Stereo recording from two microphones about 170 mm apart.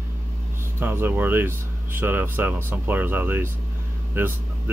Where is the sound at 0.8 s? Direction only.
10° right (ahead or behind).